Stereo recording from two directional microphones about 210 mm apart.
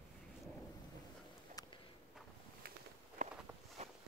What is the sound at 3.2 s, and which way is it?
Walk, 35° right (ahead or behind).